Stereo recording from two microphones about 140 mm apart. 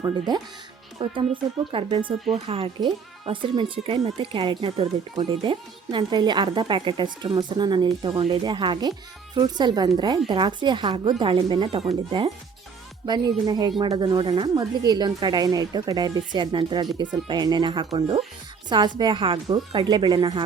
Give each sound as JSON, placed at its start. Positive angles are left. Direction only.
{"t": 0.0, "sound": "speech", "side_deg": -30}
{"t": 13.1, "sound": "speech", "side_deg": -30}